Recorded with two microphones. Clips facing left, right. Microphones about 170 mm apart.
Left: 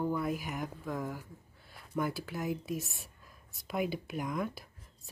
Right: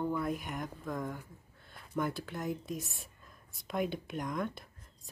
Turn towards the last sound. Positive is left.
turn(degrees=5)  # may be behind; listen again after turning